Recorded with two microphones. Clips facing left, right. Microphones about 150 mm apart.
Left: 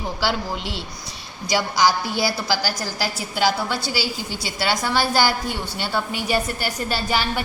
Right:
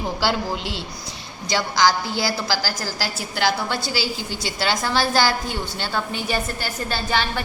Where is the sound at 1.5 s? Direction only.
10° left (ahead or behind).